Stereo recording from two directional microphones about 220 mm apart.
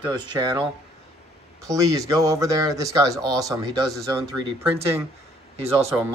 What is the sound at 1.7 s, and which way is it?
Speech, 15° right (ahead or behind).